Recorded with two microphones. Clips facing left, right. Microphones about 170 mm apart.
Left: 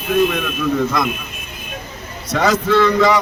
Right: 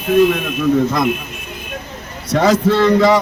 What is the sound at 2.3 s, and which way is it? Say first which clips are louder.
Speech: right 2 dB; 30° right (ahead or behind).